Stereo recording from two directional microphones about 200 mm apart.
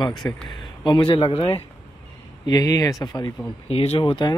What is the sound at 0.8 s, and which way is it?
Speech, 25° left (ahead or behind).